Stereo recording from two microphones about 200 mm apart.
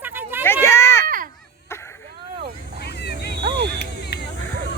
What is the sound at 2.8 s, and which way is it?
Vehicle, 55° left (ahead or behind).